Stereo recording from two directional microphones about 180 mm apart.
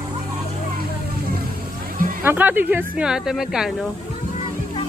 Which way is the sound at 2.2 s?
10° right (ahead or behind).